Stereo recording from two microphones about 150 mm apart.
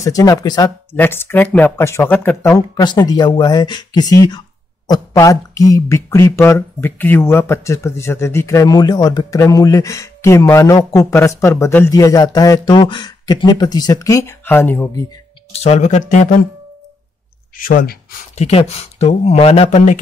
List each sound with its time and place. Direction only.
0.0 s speech: 25° left (ahead or behind)
2.5 s speech: 30° left (ahead or behind)
15.5 s speech: 45° left (ahead or behind)
17.6 s speech: 75° left (ahead or behind)
18.3 s speech: 45° left (ahead or behind)